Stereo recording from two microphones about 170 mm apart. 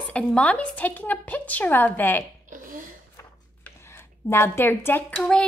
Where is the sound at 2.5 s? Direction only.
50° right (ahead or behind).